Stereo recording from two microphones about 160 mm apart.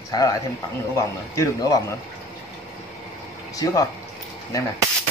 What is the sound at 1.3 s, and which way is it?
Speech, 20° left (ahead or behind).